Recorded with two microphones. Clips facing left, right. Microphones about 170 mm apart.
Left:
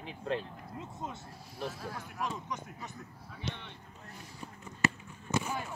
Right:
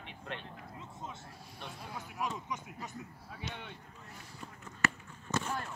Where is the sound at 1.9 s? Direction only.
5° right (ahead or behind).